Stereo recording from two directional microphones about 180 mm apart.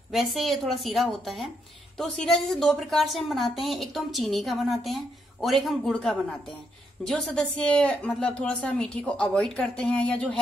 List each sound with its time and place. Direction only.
0.1 s a woman's voice: centre (ahead or behind)